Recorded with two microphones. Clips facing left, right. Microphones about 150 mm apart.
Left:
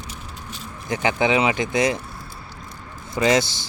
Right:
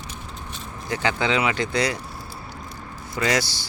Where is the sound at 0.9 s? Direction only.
20° left (ahead or behind).